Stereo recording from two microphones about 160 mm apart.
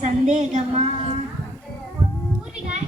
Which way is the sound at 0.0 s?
45° right (ahead or behind).